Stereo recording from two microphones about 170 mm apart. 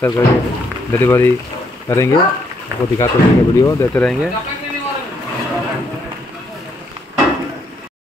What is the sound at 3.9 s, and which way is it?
Speech, 5° left (ahead or behind).